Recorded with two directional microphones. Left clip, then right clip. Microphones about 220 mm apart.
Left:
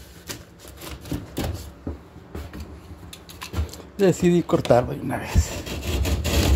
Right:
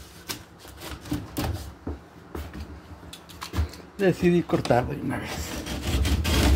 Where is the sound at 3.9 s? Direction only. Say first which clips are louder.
Left 3 dB; 20° left (ahead or behind).